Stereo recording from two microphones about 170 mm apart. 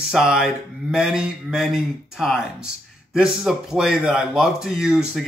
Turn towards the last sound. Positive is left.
turn(degrees=-5)  # may be behind; listen again after turning